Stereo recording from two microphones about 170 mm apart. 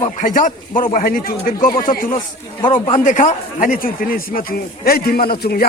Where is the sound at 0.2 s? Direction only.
50° left (ahead or behind).